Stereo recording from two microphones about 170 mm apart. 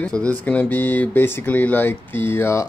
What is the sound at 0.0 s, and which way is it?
Speech, 5° left (ahead or behind).